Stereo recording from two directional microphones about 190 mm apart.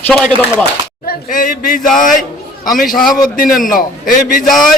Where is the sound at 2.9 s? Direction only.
Centre (ahead or behind).